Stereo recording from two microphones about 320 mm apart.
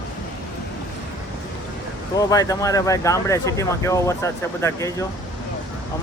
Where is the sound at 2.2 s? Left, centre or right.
Centre.